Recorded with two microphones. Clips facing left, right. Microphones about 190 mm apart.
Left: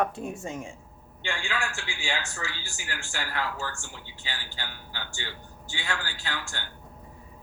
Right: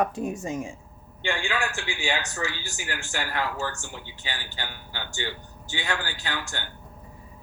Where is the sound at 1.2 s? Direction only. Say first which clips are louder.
Right 4 dB; 60° right (ahead or behind).